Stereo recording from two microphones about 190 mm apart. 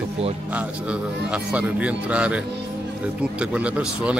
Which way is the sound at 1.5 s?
5° right (ahead or behind).